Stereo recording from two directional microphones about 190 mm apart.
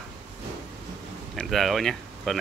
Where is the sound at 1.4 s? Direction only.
Centre (ahead or behind).